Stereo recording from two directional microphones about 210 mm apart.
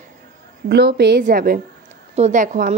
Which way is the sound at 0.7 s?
50° right (ahead or behind).